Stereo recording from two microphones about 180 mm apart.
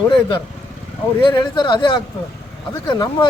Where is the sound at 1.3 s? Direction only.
25° left (ahead or behind).